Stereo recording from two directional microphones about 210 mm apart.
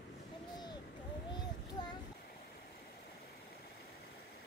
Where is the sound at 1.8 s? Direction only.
20° left (ahead or behind).